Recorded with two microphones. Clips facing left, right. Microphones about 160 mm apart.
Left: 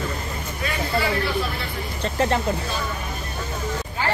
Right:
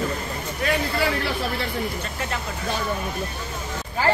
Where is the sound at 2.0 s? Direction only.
35° left (ahead or behind).